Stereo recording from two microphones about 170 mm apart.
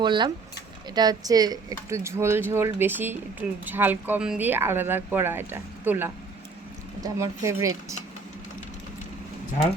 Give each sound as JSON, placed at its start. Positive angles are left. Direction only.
{"t": 0.0, "sound": "speech", "side_deg": -25}